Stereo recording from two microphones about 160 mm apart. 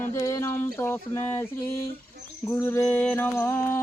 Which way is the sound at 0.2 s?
20° left (ahead or behind).